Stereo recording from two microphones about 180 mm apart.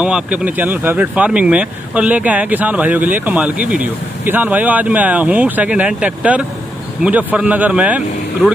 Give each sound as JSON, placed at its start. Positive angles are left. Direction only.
{"t": 0.0, "sound": "speech", "side_deg": -5}